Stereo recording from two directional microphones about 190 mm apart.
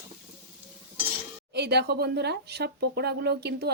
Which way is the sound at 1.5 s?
60° right (ahead or behind).